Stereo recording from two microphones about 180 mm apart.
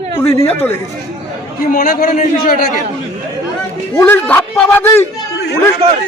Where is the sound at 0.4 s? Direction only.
10° left (ahead or behind).